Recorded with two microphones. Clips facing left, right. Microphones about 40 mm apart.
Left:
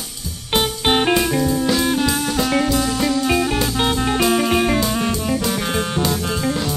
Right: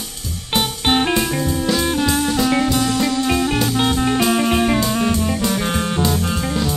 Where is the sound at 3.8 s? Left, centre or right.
Centre.